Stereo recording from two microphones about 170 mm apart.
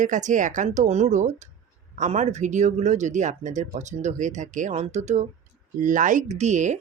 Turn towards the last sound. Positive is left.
turn(degrees=-45)  # may be behind; listen again after turning